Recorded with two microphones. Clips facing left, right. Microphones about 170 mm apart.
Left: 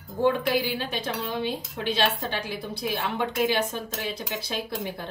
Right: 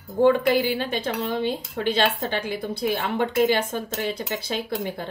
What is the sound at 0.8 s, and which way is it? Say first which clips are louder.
Speech: right 4 dB; 55° right (ahead or behind).